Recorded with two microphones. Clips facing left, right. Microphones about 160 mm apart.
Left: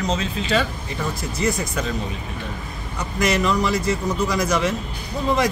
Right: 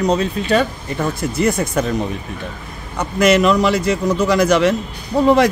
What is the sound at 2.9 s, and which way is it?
A man's voice, 65° right (ahead or behind).